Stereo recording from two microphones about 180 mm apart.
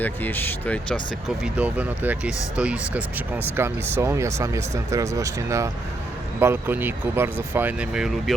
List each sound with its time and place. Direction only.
0.0 s speech: 10° left (ahead or behind)
1.5 s speech: 10° right (ahead or behind)